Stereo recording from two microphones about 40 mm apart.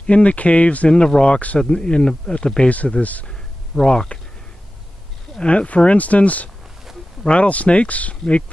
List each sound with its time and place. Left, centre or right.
0.1 s speech: left
3.0 s speech: left
3.3 s a sound: centre
5.4 s speech: left